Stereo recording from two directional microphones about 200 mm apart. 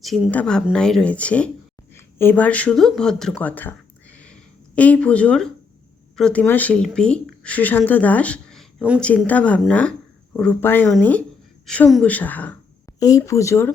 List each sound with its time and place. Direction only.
0.0 s a woman's voice: centre (ahead or behind)